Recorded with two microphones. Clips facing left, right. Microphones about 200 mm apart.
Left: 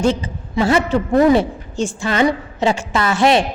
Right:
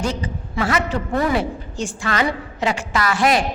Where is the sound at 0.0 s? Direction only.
25° left (ahead or behind).